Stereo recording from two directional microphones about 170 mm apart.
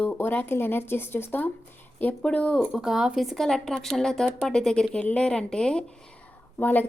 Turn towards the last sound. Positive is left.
turn(degrees=10)  # may be behind; listen again after turning